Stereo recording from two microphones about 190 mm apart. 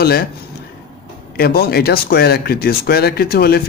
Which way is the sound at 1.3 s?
55° left (ahead or behind).